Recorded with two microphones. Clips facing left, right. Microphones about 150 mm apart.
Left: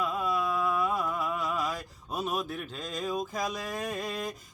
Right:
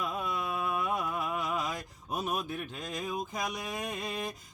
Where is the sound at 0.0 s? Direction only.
25° right (ahead or behind).